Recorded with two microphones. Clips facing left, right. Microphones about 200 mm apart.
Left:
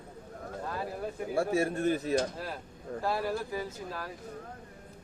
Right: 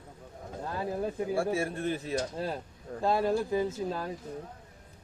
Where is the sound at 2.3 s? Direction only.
25° right (ahead or behind).